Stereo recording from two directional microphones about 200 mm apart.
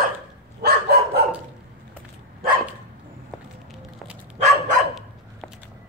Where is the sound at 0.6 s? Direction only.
50° right (ahead or behind).